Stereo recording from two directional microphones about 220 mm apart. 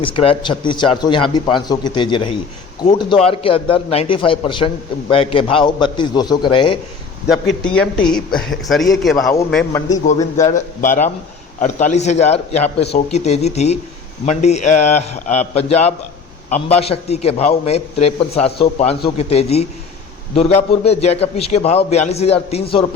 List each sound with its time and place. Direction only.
0.0 s a man's voice: 25° left (ahead or behind)
7.6 s speech: 5° left (ahead or behind)
10.2 s a man's voice: 15° left (ahead or behind)
10.5 s a man's voice: 35° left (ahead or behind)